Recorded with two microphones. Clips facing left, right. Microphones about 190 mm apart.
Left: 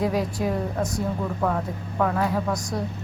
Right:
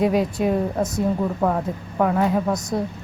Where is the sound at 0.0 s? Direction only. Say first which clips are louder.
Right 5 dB; 20° right (ahead or behind).